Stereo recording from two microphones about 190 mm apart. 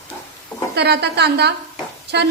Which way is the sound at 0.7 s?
60° right (ahead or behind).